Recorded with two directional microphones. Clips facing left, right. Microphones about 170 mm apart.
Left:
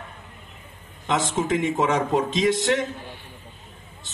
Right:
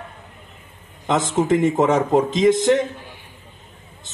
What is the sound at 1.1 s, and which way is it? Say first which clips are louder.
Speech: right 5 dB; 45° right (ahead or behind).